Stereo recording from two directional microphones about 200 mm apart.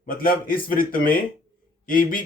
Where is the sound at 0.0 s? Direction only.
45° left (ahead or behind).